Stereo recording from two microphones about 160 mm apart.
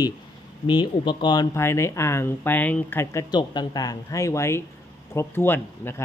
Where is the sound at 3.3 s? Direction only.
25° left (ahead or behind).